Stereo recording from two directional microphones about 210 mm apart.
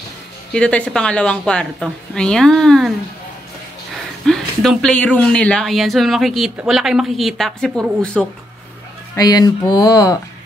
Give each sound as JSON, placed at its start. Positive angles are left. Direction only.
{"t": 0.5, "sound": "speech", "side_deg": 5}
{"t": 4.3, "sound": "speech", "side_deg": 0}
{"t": 9.1, "sound": "speech", "side_deg": 20}